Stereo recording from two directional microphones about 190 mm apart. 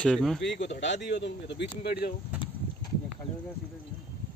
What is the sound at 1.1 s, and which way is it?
Speech, 65° left (ahead or behind).